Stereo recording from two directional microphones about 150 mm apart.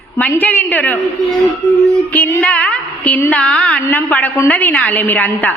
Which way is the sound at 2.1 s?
10° left (ahead or behind).